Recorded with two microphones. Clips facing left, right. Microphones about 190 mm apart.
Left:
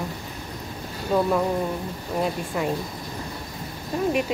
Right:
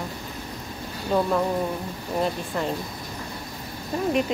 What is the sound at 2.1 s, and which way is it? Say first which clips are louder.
Speech: even; 5° left (ahead or behind).